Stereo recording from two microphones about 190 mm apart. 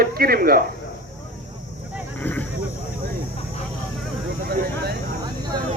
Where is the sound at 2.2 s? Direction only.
10° left (ahead or behind).